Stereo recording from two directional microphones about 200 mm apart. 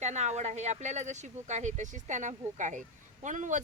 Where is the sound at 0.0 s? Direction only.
35° right (ahead or behind).